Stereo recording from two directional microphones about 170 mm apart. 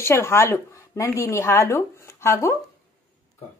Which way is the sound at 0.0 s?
15° left (ahead or behind).